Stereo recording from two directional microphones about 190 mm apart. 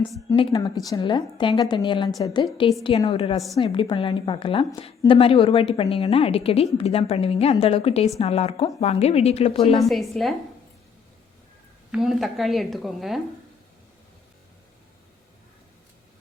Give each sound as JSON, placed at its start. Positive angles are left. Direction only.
{"t": 0.5, "sound": "a woman's voice", "side_deg": 20}
{"t": 9.9, "sound": "speech", "side_deg": 0}
{"t": 11.9, "sound": "speech", "side_deg": 0}